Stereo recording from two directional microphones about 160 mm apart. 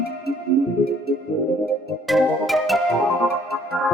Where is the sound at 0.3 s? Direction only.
80° left.